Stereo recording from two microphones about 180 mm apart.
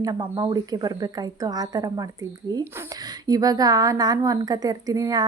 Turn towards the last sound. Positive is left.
turn(degrees=-20)  # may be behind; listen again after turning